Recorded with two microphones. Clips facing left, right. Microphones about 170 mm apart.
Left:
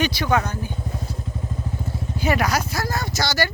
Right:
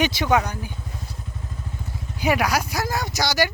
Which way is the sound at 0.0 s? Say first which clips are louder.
Right 1 dB; 20° right (ahead or behind).